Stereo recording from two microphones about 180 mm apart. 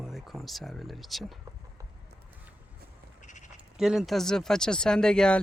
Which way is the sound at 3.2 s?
40° left (ahead or behind).